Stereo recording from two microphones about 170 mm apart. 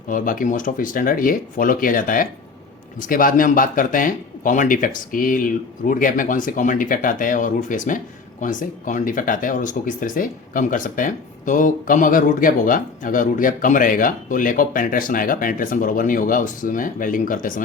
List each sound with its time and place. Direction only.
0.1 s speech: 55° left (ahead or behind)